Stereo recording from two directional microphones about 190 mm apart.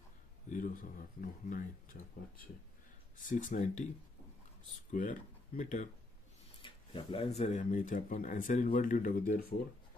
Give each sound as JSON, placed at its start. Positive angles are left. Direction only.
{"t": 0.5, "sound": "speech", "side_deg": 45}
{"t": 3.2, "sound": "speech", "side_deg": 45}
{"t": 5.6, "sound": "speech", "side_deg": 40}
{"t": 6.6, "sound": "speech", "side_deg": 25}